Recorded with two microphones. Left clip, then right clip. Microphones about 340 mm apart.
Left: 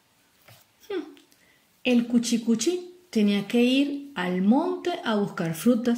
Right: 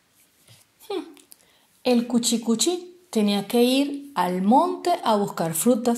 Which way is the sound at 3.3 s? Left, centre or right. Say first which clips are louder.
Right 3 dB; centre.